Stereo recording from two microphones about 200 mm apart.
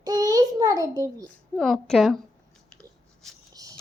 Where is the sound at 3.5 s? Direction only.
15° right (ahead or behind).